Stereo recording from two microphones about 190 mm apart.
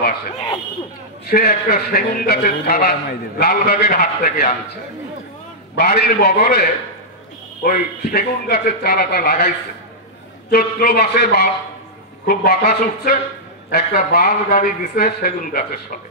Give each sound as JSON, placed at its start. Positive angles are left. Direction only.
{"t": 1.3, "sound": "a man's voice", "side_deg": 55}
{"t": 5.8, "sound": "a man's voice", "side_deg": 55}
{"t": 10.5, "sound": "a man's voice", "side_deg": 50}